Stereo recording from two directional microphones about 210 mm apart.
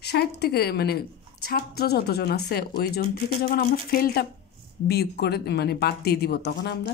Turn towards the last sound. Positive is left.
turn(degrees=50)  # may be behind; listen again after turning